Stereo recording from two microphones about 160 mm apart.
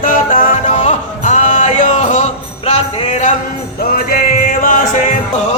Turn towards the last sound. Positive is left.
turn(degrees=55)  # may be behind; listen again after turning